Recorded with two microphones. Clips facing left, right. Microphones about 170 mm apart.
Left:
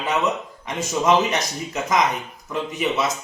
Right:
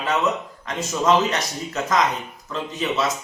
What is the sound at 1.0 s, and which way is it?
Speech, 15° left (ahead or behind).